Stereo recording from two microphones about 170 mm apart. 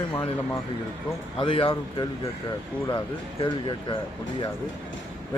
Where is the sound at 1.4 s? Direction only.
30° left (ahead or behind).